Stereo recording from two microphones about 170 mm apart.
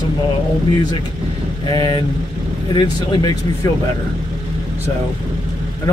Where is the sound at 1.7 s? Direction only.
25° left (ahead or behind).